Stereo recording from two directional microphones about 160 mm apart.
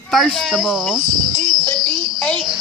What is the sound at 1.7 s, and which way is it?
Speech, 25° right (ahead or behind).